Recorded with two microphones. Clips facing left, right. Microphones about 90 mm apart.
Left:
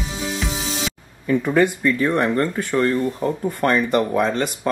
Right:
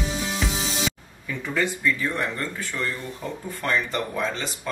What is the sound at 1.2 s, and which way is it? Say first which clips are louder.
Speech: left 9 dB; 55° left (ahead or behind).